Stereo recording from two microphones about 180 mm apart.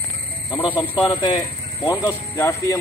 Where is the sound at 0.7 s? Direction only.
25° left (ahead or behind).